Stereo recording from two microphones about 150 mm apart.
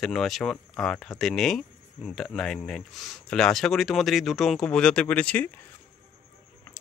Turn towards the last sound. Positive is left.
turn(degrees=10)  # may be behind; listen again after turning